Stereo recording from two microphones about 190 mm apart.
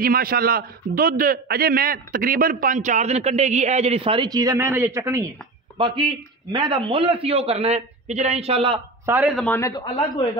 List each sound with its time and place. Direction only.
0.0 s a man's voice: 50° right (ahead or behind); by 8.8 s 30° right (ahead or behind)
9.0 s speech: 10° right (ahead or behind)
9.4 s a man's voice: 15° left (ahead or behind)